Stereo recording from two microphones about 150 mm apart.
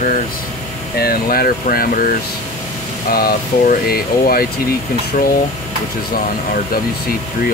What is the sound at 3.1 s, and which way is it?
Speech, 85° left.